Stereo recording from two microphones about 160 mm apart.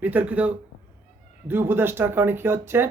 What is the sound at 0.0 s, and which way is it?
Speech, 10° right (ahead or behind).